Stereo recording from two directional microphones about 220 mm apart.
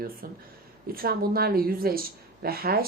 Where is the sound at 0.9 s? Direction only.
40° right (ahead or behind).